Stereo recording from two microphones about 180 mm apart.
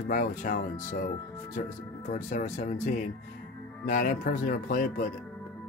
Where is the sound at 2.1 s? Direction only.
45° left (ahead or behind).